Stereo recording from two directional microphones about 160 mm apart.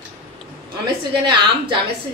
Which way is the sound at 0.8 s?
30° right (ahead or behind).